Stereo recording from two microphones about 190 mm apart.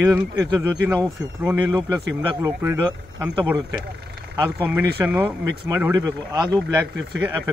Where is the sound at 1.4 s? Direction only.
10° right (ahead or behind).